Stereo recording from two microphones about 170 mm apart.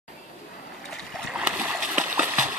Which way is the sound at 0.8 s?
5° right (ahead or behind).